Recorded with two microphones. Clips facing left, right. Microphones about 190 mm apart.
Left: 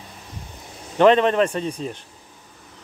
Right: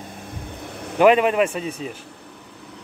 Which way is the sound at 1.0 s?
10° right (ahead or behind).